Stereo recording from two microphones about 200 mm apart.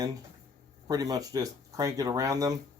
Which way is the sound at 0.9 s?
20° right (ahead or behind).